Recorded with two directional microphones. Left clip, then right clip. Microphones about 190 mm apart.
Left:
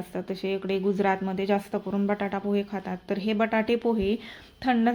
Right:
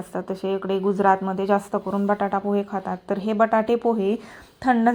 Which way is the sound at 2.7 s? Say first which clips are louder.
Right 5 dB; 20° left (ahead or behind).